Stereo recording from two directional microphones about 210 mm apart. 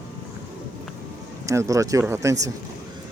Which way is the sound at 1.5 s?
15° right (ahead or behind).